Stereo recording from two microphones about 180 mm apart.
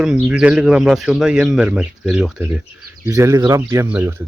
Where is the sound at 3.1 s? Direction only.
15° right (ahead or behind).